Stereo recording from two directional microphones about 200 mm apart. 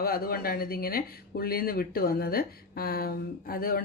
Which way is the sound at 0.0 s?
50° left (ahead or behind).